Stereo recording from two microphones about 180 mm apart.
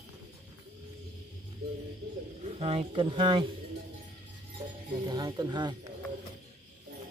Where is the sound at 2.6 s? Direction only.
35° right (ahead or behind).